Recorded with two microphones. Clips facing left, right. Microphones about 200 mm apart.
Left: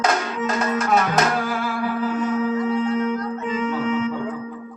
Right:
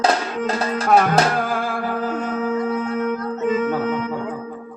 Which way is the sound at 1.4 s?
50° right (ahead or behind).